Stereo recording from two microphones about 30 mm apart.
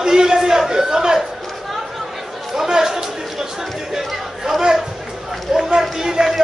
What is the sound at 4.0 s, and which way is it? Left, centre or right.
Chatter, centre.